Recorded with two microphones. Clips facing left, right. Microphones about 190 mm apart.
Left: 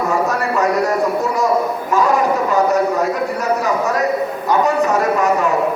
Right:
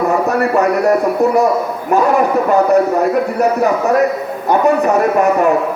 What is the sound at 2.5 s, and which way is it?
A man's voice, 60° right (ahead or behind).